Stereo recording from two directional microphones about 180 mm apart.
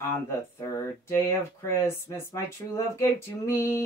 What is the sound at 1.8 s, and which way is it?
Speech, 15° left (ahead or behind).